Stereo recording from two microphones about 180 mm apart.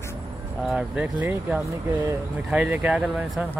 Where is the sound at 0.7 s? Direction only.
5° right (ahead or behind).